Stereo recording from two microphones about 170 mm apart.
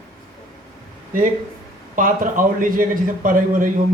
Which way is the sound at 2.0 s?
50° right (ahead or behind).